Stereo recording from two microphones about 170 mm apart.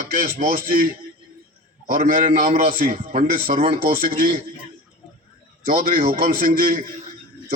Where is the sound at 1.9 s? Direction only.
55° right (ahead or behind).